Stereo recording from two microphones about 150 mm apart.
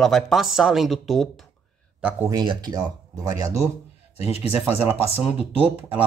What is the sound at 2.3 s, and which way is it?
Speech, 30° right (ahead or behind).